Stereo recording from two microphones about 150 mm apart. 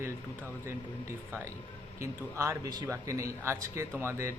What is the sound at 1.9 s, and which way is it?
A man's voice, 20° right (ahead or behind).